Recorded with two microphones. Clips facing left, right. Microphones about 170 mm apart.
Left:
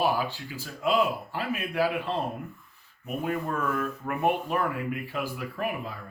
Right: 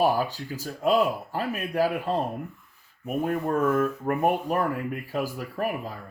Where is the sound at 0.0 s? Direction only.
45° right (ahead or behind).